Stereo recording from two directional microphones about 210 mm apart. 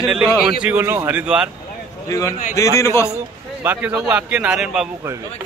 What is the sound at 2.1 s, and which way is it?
A man's voice, 15° left (ahead or behind).